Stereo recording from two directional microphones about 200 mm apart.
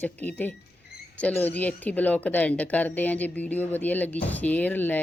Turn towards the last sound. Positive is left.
turn(degrees=10)  # may be behind; listen again after turning